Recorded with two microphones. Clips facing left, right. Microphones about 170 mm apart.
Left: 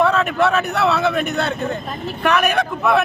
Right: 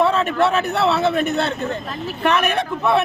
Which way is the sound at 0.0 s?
30° right (ahead or behind).